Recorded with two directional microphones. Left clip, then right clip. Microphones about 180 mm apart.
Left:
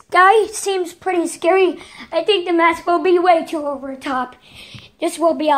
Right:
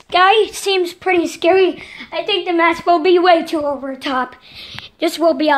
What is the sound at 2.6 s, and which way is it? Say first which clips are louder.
A woman's voice: right 2 dB; 10° right (ahead or behind).